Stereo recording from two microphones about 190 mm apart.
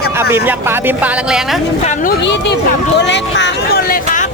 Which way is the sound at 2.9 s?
70° left (ahead or behind).